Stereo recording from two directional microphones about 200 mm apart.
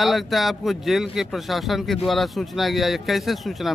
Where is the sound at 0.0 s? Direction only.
Centre (ahead or behind).